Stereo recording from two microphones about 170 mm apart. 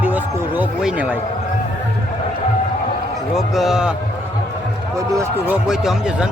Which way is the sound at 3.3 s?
Centre (ahead or behind).